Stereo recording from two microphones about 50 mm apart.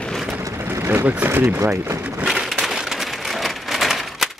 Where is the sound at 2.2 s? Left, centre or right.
Centre.